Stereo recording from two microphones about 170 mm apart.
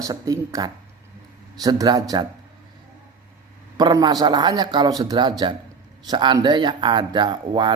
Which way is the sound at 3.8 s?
25° right (ahead or behind).